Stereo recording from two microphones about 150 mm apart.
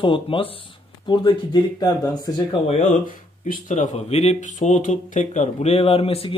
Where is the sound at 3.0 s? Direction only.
60° left (ahead or behind); by 6.4 s 40° left (ahead or behind).